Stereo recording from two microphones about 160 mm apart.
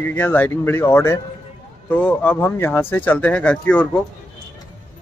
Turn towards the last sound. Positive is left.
turn(degrees=10)  # may be behind; listen again after turning